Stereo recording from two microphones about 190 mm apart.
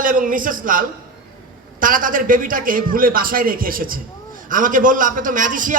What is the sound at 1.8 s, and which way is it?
A man's voice, 45° right (ahead or behind).